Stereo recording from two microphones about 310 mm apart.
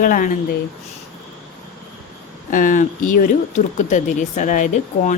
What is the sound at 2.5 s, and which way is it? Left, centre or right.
Speech, left.